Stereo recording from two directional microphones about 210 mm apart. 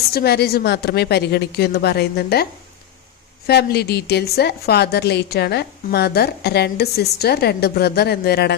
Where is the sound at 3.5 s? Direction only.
50° left (ahead or behind).